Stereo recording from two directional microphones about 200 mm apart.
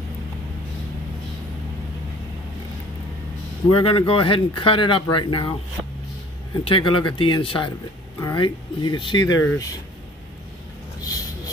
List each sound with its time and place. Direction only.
3.7 s speech: 25° left (ahead or behind)
6.6 s speech: 25° left (ahead or behind)